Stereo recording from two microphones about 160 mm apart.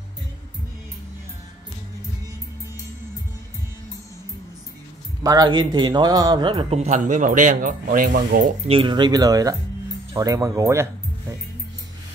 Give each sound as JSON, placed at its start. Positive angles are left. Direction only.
{"t": 5.2, "sound": "a man's voice", "side_deg": -25}
{"t": 8.6, "sound": "speech", "side_deg": -30}